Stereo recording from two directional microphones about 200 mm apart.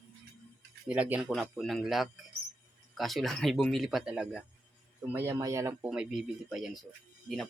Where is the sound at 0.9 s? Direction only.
5° right (ahead or behind).